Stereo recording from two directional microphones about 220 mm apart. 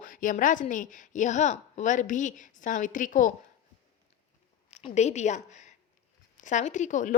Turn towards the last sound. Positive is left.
turn(degrees=35)  # may be behind; listen again after turning